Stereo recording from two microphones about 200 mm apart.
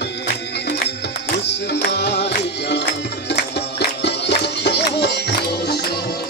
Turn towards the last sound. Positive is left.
turn(degrees=55)  # may be behind; listen again after turning